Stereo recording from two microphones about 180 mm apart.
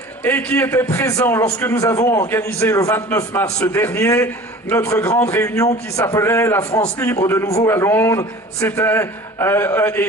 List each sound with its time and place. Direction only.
0.2 s a man's voice: 10° left (ahead or behind)